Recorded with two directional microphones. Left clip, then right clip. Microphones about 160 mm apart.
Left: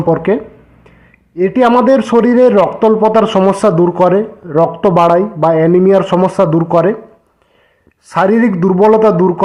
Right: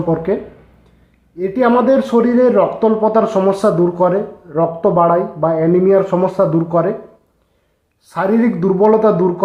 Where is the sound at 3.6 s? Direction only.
30° left (ahead or behind).